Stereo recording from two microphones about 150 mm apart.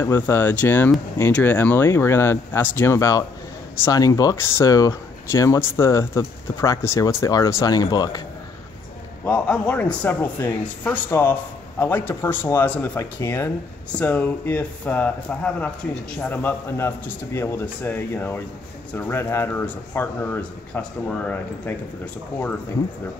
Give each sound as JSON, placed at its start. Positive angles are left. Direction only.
{"t": 0.0, "sound": "speech", "side_deg": 15}
{"t": 9.2, "sound": "speech", "side_deg": 10}